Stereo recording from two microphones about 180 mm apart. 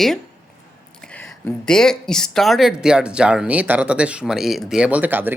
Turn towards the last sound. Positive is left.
turn(degrees=-10)  # may be behind; listen again after turning